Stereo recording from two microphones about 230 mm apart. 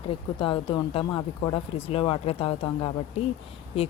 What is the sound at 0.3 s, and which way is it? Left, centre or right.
Speech, left.